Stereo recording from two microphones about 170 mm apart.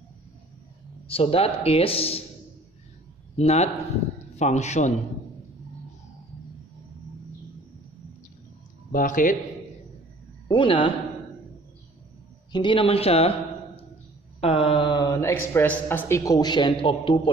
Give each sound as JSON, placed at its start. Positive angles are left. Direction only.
{"t": 1.0, "sound": "speech", "side_deg": 35}
{"t": 3.3, "sound": "a man's voice", "side_deg": 40}
{"t": 8.9, "sound": "a man's voice", "side_deg": 50}
{"t": 10.5, "sound": "speech", "side_deg": 30}
{"t": 12.5, "sound": "speech", "side_deg": 30}
{"t": 14.4, "sound": "speech", "side_deg": 35}